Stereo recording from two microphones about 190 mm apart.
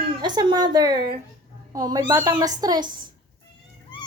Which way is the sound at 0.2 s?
20° right (ahead or behind).